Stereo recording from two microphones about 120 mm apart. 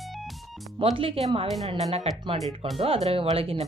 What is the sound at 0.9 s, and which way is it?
Speech, 50° right (ahead or behind).